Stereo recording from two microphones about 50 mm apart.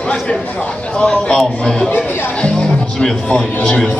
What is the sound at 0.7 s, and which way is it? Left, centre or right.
A man's voice, left.